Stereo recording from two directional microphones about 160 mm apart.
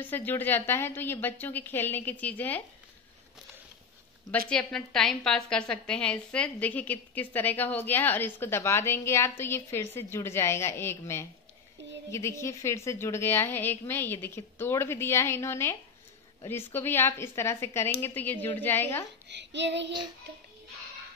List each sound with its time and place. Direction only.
0.0 s a woman's voice: 10° left (ahead or behind)
4.5 s a woman's voice: 5° left (ahead or behind)
19.2 s child singing: 90° right